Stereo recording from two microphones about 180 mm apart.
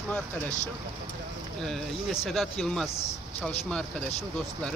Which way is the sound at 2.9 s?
35° left (ahead or behind).